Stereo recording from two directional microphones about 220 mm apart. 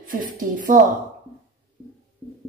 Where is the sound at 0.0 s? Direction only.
40° right (ahead or behind).